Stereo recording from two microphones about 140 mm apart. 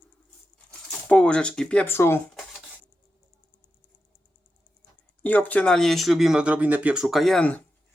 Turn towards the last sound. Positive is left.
turn(degrees=5)  # may be behind; listen again after turning